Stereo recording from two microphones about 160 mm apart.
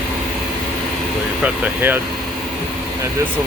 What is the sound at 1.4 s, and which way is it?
Speech, 10° right (ahead or behind).